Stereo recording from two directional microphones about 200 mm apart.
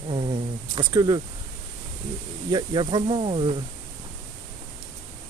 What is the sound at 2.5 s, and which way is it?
Speech, 20° right (ahead or behind).